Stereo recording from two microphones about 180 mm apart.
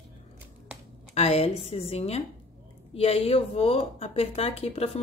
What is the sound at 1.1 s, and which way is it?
Speech, 35° left (ahead or behind).